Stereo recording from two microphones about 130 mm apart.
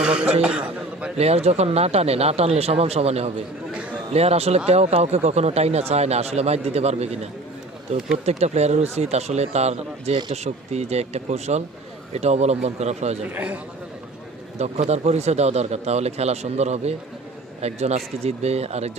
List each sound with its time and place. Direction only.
0.0 s a man's voice: 5° right (ahead or behind)
0.4 s a sound: 10° right (ahead or behind)
1.1 s speech: 55° right (ahead or behind)
13.3 s a man's voice: 10° right (ahead or behind)
14.6 s speech: 60° right (ahead or behind)